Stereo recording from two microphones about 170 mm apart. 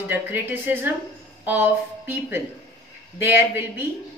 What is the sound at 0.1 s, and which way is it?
A woman's voice, 10° right (ahead or behind).